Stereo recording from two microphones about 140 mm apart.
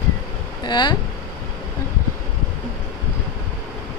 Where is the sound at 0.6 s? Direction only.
30° left (ahead or behind).